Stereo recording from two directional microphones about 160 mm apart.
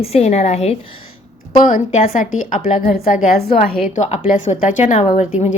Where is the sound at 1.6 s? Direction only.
55° left (ahead or behind).